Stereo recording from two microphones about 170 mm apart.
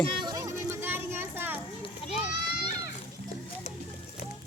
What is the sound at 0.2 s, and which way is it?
Music, 25° right (ahead or behind).